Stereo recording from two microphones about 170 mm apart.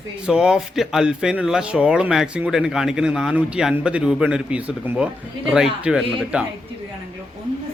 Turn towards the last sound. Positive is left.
turn(degrees=-5)  # may be behind; listen again after turning